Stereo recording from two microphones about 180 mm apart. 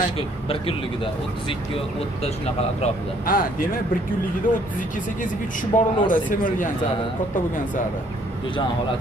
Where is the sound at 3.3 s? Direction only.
50° left (ahead or behind).